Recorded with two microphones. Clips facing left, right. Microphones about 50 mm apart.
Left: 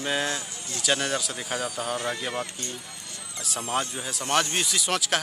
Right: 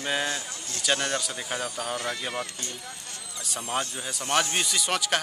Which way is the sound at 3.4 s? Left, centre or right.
Centre.